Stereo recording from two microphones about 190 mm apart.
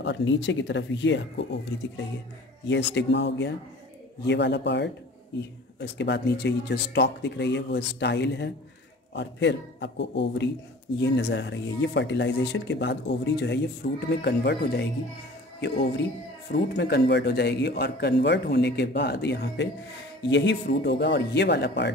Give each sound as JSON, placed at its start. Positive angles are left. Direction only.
{"t": 0.0, "sound": "speech", "side_deg": 70}
{"t": 2.6, "sound": "speech", "side_deg": 70}
{"t": 13.8, "sound": "speech", "side_deg": 50}